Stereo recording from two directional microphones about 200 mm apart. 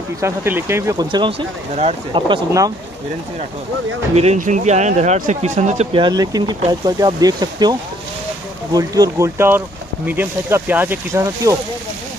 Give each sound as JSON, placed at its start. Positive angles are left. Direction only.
{"t": 0.2, "sound": "speech", "side_deg": -10}
{"t": 4.1, "sound": "speech", "side_deg": -35}
{"t": 6.0, "sound": "speech", "side_deg": -20}
{"t": 8.7, "sound": "speech", "side_deg": -20}